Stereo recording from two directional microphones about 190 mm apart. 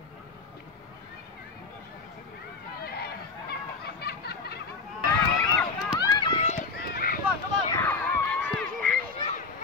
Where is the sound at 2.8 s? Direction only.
55° left (ahead or behind).